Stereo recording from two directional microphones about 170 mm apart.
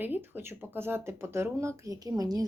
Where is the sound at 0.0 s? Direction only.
10° right (ahead or behind).